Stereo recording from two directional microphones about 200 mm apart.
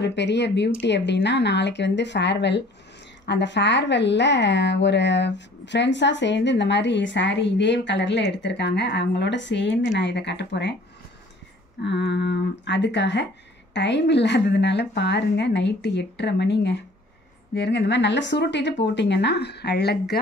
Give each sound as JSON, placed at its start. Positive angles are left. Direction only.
{"t": 0.0, "sound": "a woman's voice", "side_deg": 60}
{"t": 11.8, "sound": "a woman's voice", "side_deg": 60}